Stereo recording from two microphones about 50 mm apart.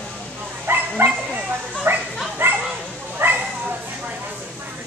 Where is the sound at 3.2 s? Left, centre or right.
Right.